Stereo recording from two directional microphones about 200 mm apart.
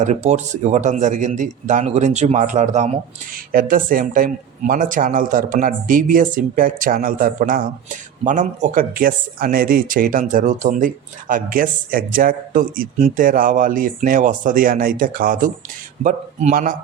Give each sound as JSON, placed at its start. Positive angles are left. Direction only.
{"t": 0.0, "sound": "speech", "side_deg": -35}